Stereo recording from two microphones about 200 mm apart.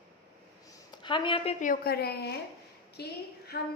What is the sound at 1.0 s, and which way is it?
Speech, 25° left (ahead or behind).